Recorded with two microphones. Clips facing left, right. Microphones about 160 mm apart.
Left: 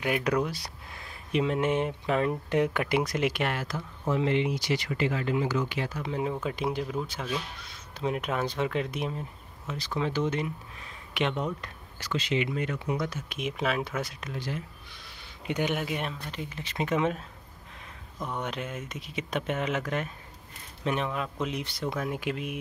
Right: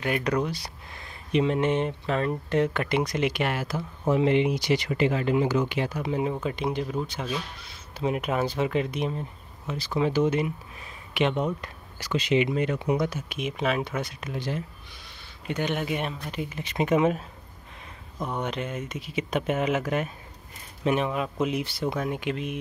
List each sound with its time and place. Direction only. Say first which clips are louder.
0.0 s speech: right 1 dB; 5° left (ahead or behind)
4.1 s speech: right 4 dB; 15° right (ahead or behind)
13.3 s speech: right 3 dB; centre (ahead or behind)
14.3 s speech: right 5 dB; 20° right (ahead or behind)
15.4 s speech: right 1 dB; 15° left (ahead or behind)
15.8 s speech: right 3 dB; centre (ahead or behind)
18.2 s speech: right 4 dB; centre (ahead or behind)